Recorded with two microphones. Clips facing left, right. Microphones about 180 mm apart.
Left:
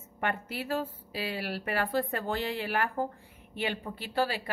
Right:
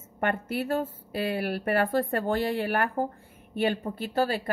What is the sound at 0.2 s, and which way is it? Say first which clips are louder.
A woman's voice: right 5 dB; 50° right (ahead or behind).